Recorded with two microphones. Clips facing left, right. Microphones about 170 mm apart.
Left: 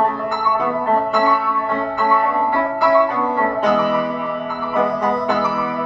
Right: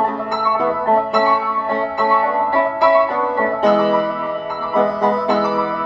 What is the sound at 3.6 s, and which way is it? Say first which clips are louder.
Music: right 5 dB; 30° right (ahead or behind).